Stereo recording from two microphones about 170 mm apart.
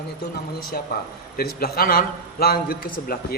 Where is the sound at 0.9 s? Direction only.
65° left (ahead or behind).